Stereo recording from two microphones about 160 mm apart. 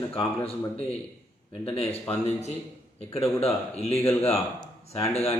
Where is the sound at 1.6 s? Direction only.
40° left (ahead or behind).